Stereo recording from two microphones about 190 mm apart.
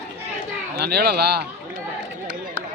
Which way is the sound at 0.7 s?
60° right (ahead or behind).